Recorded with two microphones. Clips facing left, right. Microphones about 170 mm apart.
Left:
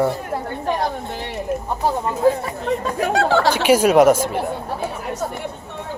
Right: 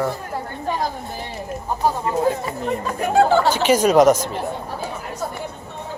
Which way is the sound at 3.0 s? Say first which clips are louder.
Right 3 dB; 80° left.